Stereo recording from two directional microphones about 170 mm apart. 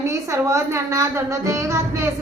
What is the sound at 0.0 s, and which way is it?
A woman's voice, 20° right (ahead or behind).